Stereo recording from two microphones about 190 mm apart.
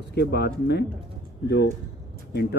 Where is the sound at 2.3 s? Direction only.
60° left (ahead or behind).